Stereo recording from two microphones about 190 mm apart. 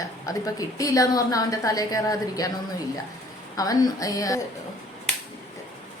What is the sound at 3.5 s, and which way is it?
Speech, 20° left (ahead or behind).